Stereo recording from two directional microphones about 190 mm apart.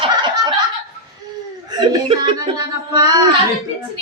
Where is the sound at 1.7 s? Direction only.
25° right (ahead or behind).